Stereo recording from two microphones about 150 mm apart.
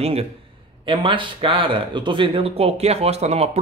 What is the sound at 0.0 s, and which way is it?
A man's voice, 40° right (ahead or behind).